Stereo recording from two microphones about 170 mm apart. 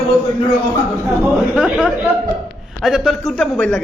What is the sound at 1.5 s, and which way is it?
A man's voice, 5° right (ahead or behind).